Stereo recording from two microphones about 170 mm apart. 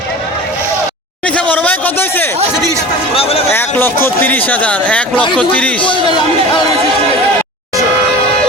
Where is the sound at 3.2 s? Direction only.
35° left (ahead or behind).